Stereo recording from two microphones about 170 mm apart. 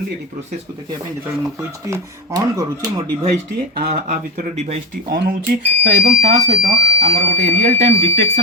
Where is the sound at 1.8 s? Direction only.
20° right (ahead or behind).